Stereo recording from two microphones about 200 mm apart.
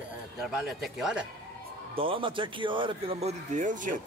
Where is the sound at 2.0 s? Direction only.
25° right (ahead or behind).